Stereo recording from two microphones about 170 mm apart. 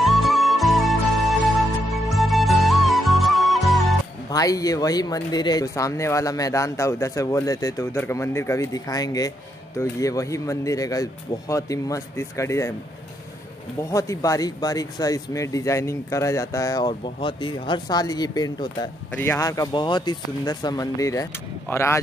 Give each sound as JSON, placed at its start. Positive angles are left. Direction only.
{"t": 0.0, "sound": "music", "side_deg": 0}
{"t": 4.3, "sound": "speech", "side_deg": 20}
{"t": 13.8, "sound": "speech", "side_deg": 20}